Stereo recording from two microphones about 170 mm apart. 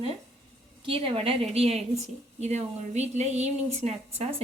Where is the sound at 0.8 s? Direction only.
35° right (ahead or behind).